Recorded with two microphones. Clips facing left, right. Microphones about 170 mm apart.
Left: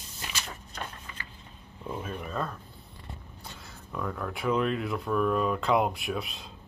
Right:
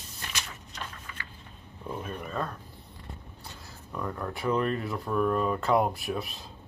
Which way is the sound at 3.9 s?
Centre (ahead or behind).